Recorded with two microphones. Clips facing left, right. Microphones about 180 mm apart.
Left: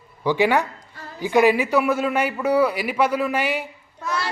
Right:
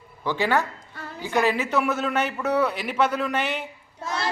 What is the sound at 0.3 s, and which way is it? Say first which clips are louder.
A man's voice: left 4 dB; 15° left (ahead or behind).